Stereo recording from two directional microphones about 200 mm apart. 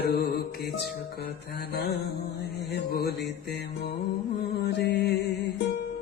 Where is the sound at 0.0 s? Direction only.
55° left (ahead or behind).